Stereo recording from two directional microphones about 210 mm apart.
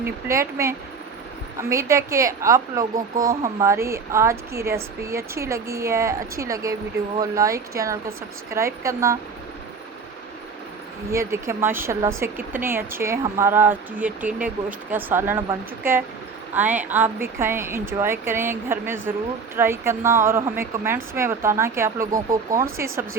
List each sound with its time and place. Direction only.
0.0 s a woman's voice: 15° right (ahead or behind)
11.1 s a woman's voice: 15° right (ahead or behind)